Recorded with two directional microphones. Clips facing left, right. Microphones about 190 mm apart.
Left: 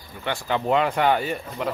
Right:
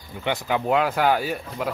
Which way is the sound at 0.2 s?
10° right (ahead or behind).